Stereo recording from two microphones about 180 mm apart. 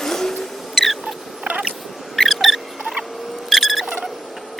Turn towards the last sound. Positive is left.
turn(degrees=0)  # may be behind; listen again after turning